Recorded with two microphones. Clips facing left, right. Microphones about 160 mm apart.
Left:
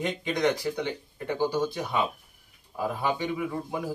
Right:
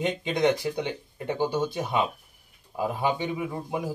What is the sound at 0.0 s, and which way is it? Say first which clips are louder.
Speech: right 2 dB; 25° right (ahead or behind).